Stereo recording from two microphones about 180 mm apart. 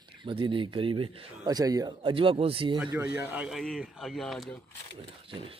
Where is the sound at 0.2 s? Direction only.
30° right (ahead or behind).